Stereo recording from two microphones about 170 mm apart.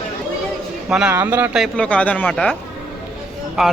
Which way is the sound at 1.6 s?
5° left (ahead or behind).